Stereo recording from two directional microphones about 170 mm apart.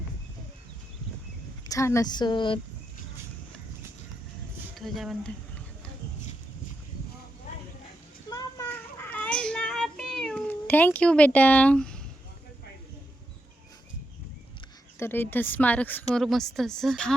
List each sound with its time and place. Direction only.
1.6 s speech: 20° left (ahead or behind)
4.7 s speech: centre (ahead or behind)
8.3 s children playing: 20° left (ahead or behind)
9.0 s cat: 10° left (ahead or behind)
14.9 s a woman's voice: 15° left (ahead or behind)